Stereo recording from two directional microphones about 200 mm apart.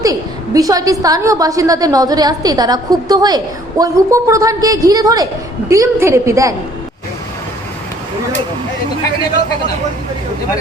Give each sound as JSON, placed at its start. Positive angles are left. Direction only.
{"t": 0.0, "sound": "a woman's voice", "side_deg": -15}